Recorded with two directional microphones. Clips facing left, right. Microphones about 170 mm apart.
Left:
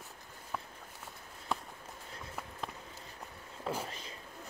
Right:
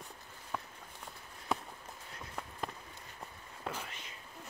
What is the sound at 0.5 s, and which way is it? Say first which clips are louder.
Walk: even; centre (ahead or behind).